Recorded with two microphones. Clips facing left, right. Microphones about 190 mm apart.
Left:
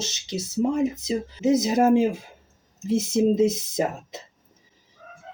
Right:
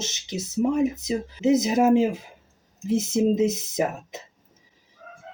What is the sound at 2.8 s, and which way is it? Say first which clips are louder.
Speech: left 1 dB; 15° right (ahead or behind).